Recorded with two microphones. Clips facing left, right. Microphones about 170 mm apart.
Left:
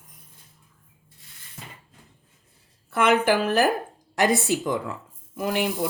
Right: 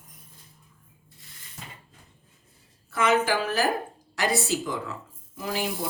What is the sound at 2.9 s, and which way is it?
Speech, 60° left (ahead or behind).